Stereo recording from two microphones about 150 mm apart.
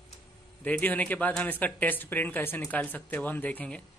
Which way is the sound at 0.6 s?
10° left (ahead or behind).